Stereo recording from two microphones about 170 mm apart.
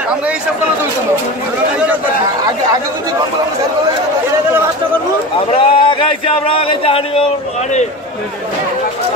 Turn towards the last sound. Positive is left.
turn(degrees=35)  # may be behind; listen again after turning